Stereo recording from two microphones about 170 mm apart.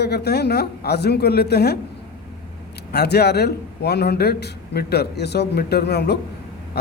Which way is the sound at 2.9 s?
75° left (ahead or behind).